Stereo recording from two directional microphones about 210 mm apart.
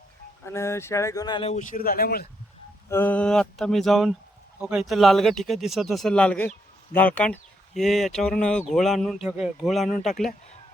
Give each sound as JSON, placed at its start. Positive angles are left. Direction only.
{"t": 0.4, "sound": "speech", "side_deg": 15}
{"t": 1.7, "sound": "speech", "side_deg": 45}
{"t": 2.9, "sound": "speech", "side_deg": 10}